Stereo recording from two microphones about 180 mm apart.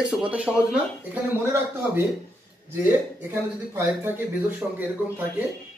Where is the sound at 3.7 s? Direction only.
10° right (ahead or behind).